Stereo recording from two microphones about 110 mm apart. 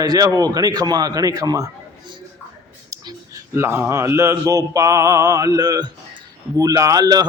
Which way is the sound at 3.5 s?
25° right (ahead or behind).